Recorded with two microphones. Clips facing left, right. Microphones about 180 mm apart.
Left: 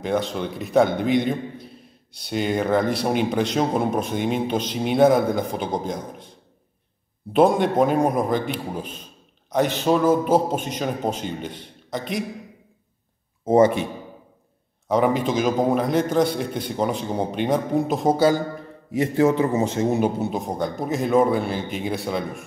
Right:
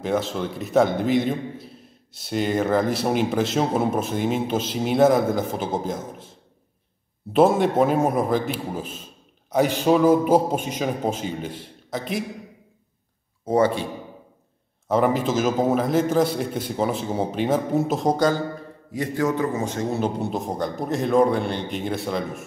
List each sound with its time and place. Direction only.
0.0 s speech: centre (ahead or behind)
7.3 s a man's voice: 5° right (ahead or behind)
13.5 s a man's voice: 20° left (ahead or behind)
14.9 s speech: centre (ahead or behind)
18.9 s a man's voice: 25° left (ahead or behind)
20.2 s speech: centre (ahead or behind)